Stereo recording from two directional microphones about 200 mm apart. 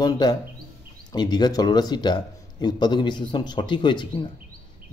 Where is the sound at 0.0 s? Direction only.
20° left (ahead or behind).